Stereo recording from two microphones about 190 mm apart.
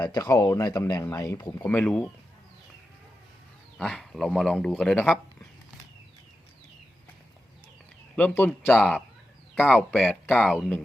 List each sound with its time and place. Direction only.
0.0 s speech: 20° left (ahead or behind)
3.8 s speech: 5° left (ahead or behind)
8.1 s speech: 5° left (ahead or behind)